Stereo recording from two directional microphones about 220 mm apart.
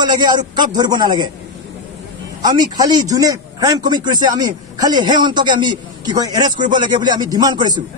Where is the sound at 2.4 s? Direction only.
15° right (ahead or behind).